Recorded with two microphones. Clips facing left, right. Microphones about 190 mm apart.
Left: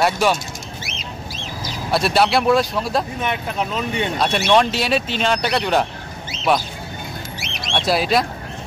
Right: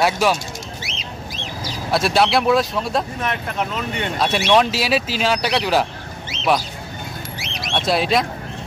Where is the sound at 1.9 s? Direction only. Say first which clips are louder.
Even; centre (ahead or behind).